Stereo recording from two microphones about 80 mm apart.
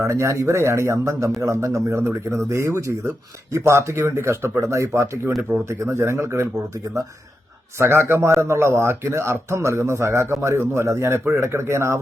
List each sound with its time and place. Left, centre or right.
0.0 s speech: right
5.4 s speech: centre
5.6 s speech: right
7.8 s speech: right